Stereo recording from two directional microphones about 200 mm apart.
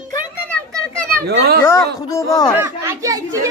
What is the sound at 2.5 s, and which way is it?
Speech, 10° right (ahead or behind).